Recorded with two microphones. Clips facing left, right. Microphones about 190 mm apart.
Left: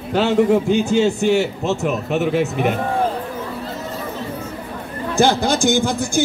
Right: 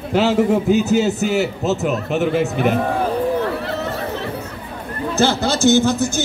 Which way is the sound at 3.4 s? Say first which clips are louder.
Right 5 dB; 70° right (ahead or behind).